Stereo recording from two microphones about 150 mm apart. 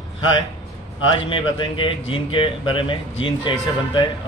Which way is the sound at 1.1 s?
35° left (ahead or behind).